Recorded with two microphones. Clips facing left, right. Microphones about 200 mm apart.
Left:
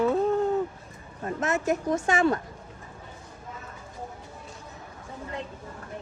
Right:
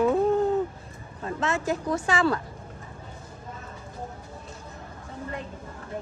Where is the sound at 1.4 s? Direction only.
30° right (ahead or behind).